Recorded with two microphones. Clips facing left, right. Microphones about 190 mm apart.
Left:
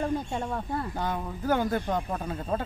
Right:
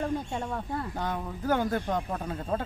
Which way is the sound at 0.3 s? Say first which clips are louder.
Left 2 dB; 40° left (ahead or behind).